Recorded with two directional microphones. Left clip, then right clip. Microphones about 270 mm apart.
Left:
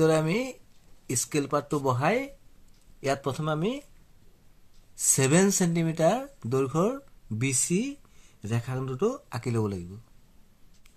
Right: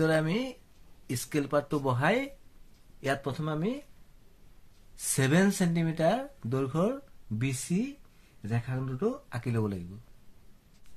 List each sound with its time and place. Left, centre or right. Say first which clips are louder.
0.0 s speech: left 4 dB; centre
4.9 s speech: left 4 dB; centre